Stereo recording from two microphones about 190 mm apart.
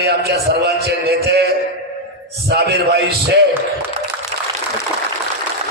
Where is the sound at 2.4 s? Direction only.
60° right (ahead or behind).